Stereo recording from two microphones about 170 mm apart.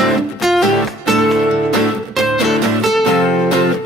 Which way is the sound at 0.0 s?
Centre (ahead or behind).